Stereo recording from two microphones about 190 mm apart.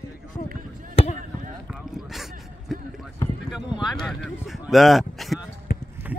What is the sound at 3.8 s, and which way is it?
Speech, centre (ahead or behind).